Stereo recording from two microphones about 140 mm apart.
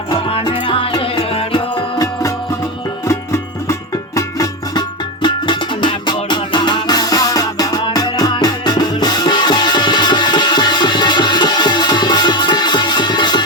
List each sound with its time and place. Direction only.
0.1 s music: 40° left (ahead or behind)
3.1 s music: 20° left (ahead or behind)